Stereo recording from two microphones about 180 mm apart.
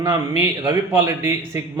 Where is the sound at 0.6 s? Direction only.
25° right (ahead or behind).